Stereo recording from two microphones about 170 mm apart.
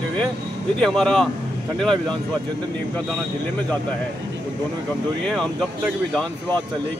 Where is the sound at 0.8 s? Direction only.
5° left (ahead or behind).